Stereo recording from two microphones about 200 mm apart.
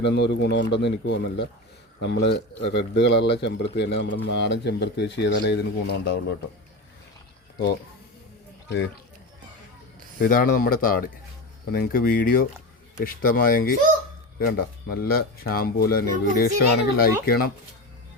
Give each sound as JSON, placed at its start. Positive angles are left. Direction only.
{"t": 0.0, "sound": "a man's voice", "side_deg": 55}
{"t": 10.2, "sound": "speech", "side_deg": 45}